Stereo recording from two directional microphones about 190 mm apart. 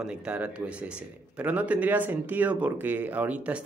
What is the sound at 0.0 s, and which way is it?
Speech, 5° right (ahead or behind).